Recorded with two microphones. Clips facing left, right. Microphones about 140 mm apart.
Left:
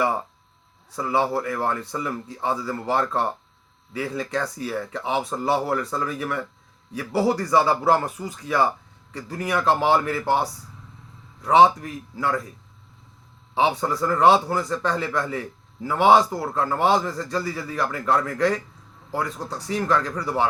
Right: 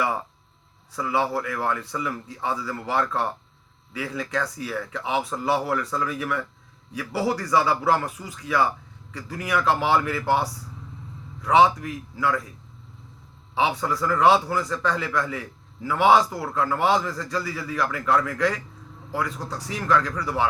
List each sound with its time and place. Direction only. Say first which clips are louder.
0.9 s a man's voice: left 2 dB; 25° left (ahead or behind)
13.6 s a man's voice: left 2 dB; 25° left (ahead or behind)